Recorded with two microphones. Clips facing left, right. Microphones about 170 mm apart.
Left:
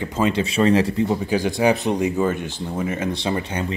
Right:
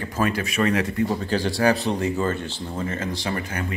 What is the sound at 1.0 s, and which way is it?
Speech, 15° left (ahead or behind).